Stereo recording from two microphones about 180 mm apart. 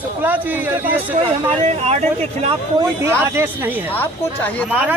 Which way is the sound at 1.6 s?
35° right (ahead or behind).